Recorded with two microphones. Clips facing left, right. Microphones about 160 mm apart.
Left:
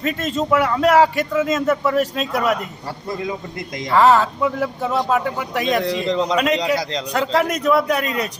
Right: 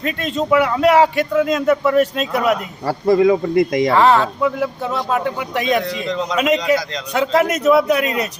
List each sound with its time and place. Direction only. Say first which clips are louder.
0.0 s speech: right 1 dB; centre (ahead or behind)
2.8 s a man's voice: right 13 dB; 75° right (ahead or behind)
3.9 s speech: left 2 dB; 5° left (ahead or behind)
5.9 s a man's voice: left 2 dB; 35° left (ahead or behind)
6.3 s speech: right 6 dB; 5° right (ahead or behind)